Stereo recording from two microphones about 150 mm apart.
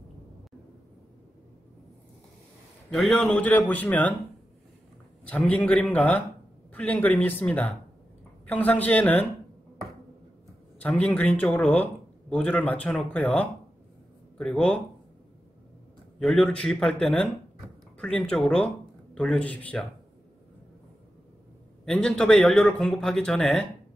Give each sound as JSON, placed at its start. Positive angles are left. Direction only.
{"t": 2.9, "sound": "a man's voice", "side_deg": 5}
{"t": 5.2, "sound": "a man's voice", "side_deg": 10}
{"t": 10.8, "sound": "a man's voice", "side_deg": 10}
{"t": 14.5, "sound": "a man's voice", "side_deg": 10}
{"t": 16.2, "sound": "a man's voice", "side_deg": 5}
{"t": 21.8, "sound": "speech", "side_deg": 5}